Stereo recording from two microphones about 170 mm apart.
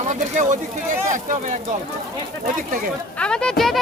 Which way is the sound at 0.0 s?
45° right (ahead or behind).